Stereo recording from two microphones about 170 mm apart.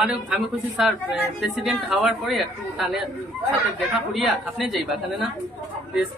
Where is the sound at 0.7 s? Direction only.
Centre (ahead or behind).